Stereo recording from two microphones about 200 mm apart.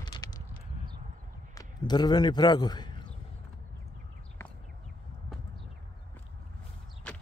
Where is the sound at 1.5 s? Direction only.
20° left (ahead or behind).